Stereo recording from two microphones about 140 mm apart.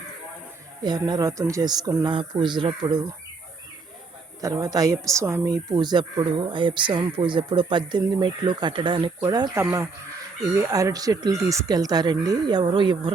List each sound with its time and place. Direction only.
0.8 s speech: 30° right (ahead or behind)
2.1 s speech: 35° right (ahead or behind)
4.4 s speech: 25° right (ahead or behind)
9.6 s speech: 20° right (ahead or behind); by 13.1 s 35° right (ahead or behind)